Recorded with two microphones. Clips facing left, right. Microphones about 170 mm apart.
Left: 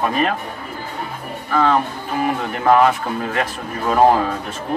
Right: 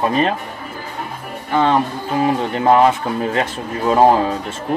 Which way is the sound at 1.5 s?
25° right (ahead or behind).